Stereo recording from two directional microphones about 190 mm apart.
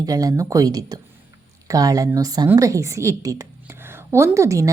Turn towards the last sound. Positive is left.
turn(degrees=-15)  # may be behind; listen again after turning